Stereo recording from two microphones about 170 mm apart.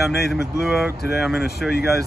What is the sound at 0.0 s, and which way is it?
Speech, centre (ahead or behind).